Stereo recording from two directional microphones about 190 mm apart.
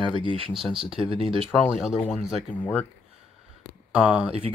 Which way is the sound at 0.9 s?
30° right (ahead or behind).